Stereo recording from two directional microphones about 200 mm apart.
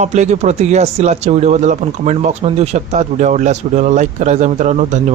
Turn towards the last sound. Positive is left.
turn(degrees=-35)  # may be behind; listen again after turning